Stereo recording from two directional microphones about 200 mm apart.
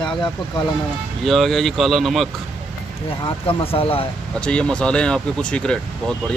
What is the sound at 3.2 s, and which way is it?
Speech, 30° left (ahead or behind).